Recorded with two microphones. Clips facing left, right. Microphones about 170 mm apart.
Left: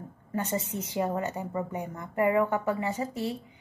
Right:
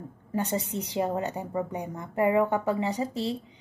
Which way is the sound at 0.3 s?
15° right (ahead or behind).